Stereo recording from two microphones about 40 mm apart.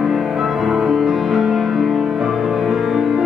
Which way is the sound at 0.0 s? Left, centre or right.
Centre.